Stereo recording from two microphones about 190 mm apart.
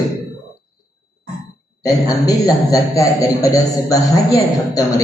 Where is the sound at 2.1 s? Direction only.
20° left (ahead or behind).